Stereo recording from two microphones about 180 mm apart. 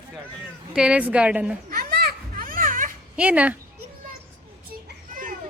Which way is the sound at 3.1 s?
5° right (ahead or behind).